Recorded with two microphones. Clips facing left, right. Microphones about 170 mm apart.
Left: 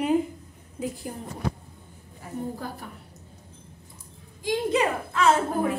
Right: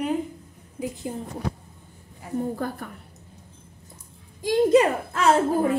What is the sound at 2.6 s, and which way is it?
Speech, 55° right (ahead or behind).